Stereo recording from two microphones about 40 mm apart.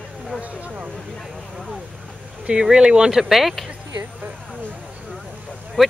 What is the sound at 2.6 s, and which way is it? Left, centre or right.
Speech, right.